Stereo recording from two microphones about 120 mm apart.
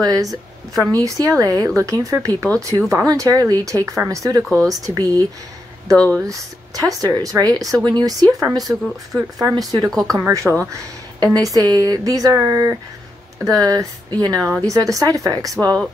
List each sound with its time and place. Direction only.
0.0 s speech: 30° right (ahead or behind)